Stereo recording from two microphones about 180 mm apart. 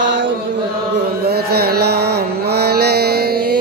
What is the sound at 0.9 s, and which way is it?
Music, 60° right (ahead or behind).